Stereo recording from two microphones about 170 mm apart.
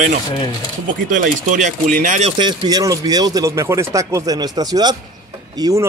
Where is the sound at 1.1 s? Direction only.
50° right (ahead or behind).